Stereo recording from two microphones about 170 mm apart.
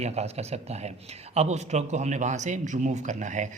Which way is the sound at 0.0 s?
40° right (ahead or behind).